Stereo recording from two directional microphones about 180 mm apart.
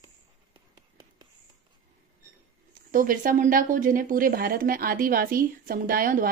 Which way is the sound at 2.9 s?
50° right (ahead or behind).